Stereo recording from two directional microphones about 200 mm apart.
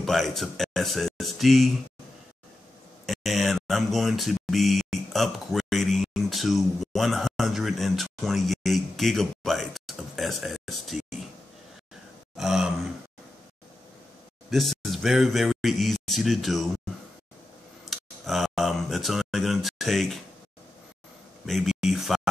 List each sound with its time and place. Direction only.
0.0 s speech: centre (ahead or behind)
3.1 s speech: centre (ahead or behind)
12.4 s speech: centre (ahead or behind)
14.5 s speech: centre (ahead or behind)
17.8 s speech: centre (ahead or behind)
21.5 s speech: centre (ahead or behind)